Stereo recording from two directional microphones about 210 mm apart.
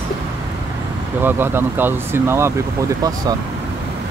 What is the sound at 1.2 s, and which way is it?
Speech, 10° right (ahead or behind).